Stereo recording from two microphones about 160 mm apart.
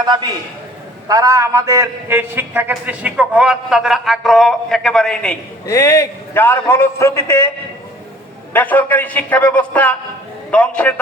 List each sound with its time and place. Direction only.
0.0 s a man's voice: 25° right (ahead or behind); by 5.4 s 5° left (ahead or behind)
5.6 s a man's voice: 20° left (ahead or behind)
8.5 s a man's voice: 10° left (ahead or behind)